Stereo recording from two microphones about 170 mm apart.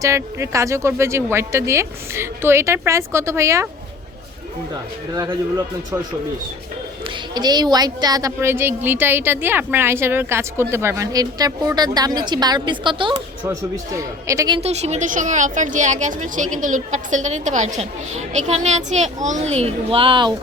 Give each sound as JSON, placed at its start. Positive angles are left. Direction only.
{"t": 0.0, "sound": "a woman's voice", "side_deg": -20}
{"t": 5.1, "sound": "a woman's voice", "side_deg": -20}
{"t": 7.3, "sound": "a woman's voice", "side_deg": -25}
{"t": 13.5, "sound": "a woman's voice", "side_deg": -20}
{"t": 14.6, "sound": "a woman's voice", "side_deg": -40}